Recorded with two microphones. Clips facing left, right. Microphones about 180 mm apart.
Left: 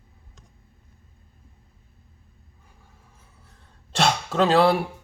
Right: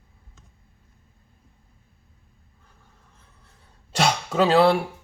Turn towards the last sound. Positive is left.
turn(degrees=0)  # may be behind; listen again after turning